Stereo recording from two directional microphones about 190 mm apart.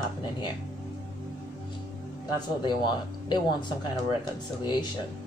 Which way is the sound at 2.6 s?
25° left (ahead or behind).